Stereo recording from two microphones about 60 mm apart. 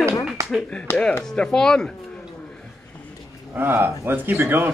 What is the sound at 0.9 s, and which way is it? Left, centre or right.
Speech, left.